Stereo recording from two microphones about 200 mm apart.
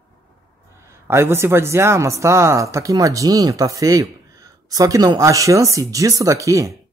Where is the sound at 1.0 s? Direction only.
15° right (ahead or behind).